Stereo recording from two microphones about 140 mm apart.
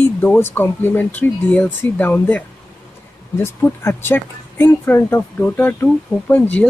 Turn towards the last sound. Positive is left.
turn(degrees=10)  # may be behind; listen again after turning